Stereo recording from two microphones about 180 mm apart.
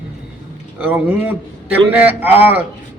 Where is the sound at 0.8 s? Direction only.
10° right (ahead or behind).